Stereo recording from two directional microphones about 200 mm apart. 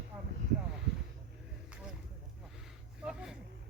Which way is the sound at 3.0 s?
Centre (ahead or behind).